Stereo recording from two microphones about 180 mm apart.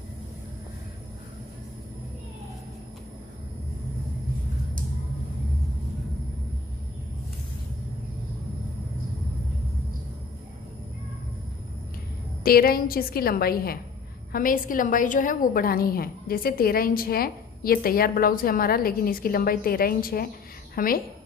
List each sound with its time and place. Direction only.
12.4 s a woman's voice: 55° left (ahead or behind)